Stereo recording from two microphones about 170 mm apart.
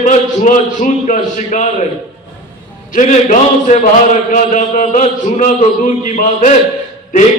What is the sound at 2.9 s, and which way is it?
A man's voice, 45° left (ahead or behind).